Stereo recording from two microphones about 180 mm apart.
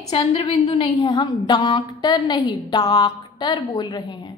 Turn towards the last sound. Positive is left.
turn(degrees=25)  # may be behind; listen again after turning